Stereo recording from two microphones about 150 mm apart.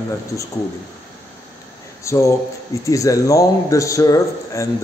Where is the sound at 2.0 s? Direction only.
20° left (ahead or behind).